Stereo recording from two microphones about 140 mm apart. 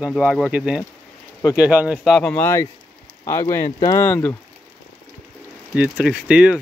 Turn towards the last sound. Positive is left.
turn(degrees=-5)  # may be behind; listen again after turning